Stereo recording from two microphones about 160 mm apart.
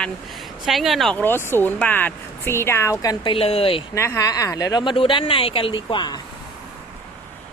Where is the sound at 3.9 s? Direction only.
15° left (ahead or behind).